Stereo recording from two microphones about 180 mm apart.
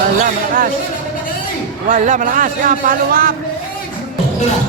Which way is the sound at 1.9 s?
45° right (ahead or behind).